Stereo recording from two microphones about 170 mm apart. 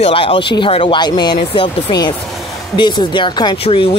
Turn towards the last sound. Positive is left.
turn(degrees=35)  # may be behind; listen again after turning